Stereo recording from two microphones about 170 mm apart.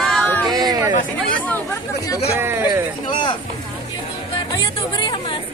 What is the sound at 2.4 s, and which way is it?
Speech, 15° right (ahead or behind).